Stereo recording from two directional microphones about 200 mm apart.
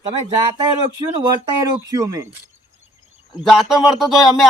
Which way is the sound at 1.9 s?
15° right (ahead or behind).